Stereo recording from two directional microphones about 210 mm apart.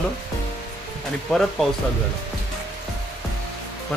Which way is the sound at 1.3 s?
Centre (ahead or behind).